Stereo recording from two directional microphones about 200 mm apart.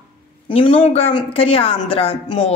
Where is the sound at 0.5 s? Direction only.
25° left (ahead or behind).